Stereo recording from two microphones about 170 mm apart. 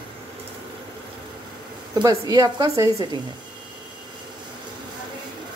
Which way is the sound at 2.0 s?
20° right (ahead or behind).